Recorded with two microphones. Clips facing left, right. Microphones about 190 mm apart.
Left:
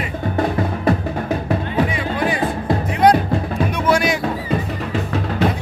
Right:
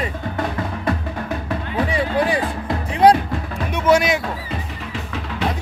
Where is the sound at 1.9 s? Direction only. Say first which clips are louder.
Right 2 dB; 30° right (ahead or behind).